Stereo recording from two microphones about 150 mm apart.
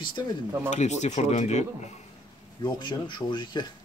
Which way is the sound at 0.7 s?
50° left (ahead or behind).